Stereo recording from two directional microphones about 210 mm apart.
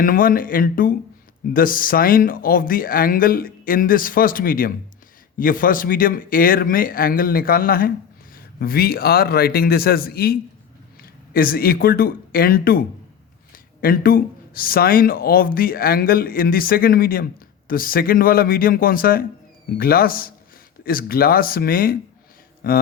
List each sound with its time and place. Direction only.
0.0 s speech: 40° left (ahead or behind)
13.8 s speech: 45° left (ahead or behind)